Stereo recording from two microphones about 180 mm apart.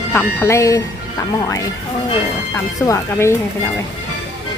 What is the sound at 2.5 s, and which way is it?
Speech, 15° left (ahead or behind).